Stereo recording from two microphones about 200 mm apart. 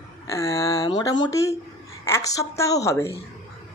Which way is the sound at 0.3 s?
15° left (ahead or behind).